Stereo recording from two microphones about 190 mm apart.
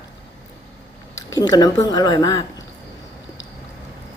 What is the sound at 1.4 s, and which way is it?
Speech, 20° left (ahead or behind).